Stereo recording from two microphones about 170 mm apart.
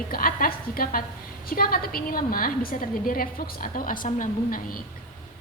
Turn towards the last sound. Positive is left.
turn(degrees=55)  # may be behind; listen again after turning